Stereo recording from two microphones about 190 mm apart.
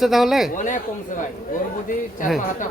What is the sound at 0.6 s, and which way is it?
Speech, 45° left (ahead or behind).